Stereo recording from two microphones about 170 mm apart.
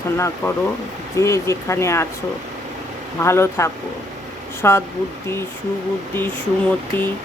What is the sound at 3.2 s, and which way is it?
Speech, 15° left (ahead or behind).